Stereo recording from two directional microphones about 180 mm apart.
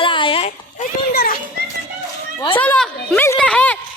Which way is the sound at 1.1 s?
60° left (ahead or behind).